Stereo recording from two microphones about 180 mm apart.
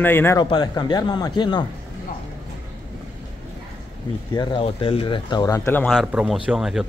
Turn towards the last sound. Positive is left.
turn(degrees=-5)  # may be behind; listen again after turning